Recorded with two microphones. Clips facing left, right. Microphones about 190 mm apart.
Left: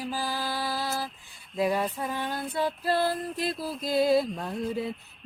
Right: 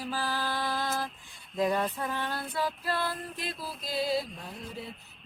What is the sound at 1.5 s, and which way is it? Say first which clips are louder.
Female singing: left 2 dB; 10° left (ahead or behind).